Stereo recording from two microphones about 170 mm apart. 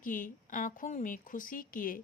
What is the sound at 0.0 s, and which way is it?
Speech, 50° left (ahead or behind).